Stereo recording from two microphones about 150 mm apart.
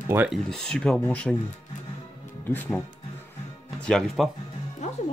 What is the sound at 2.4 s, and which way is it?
Speech, 15° left (ahead or behind).